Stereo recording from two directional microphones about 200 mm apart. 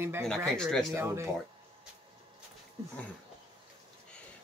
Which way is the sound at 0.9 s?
15° right (ahead or behind).